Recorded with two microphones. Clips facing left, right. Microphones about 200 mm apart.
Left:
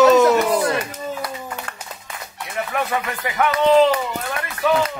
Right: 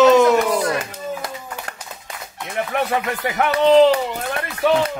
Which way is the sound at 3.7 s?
30° right (ahead or behind).